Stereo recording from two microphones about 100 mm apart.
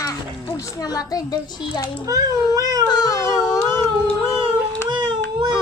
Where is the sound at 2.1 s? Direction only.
35° right (ahead or behind).